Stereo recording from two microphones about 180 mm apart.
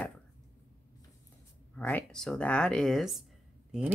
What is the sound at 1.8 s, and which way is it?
Speech, 5° left (ahead or behind).